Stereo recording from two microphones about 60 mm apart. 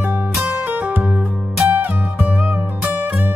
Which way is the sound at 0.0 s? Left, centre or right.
Right.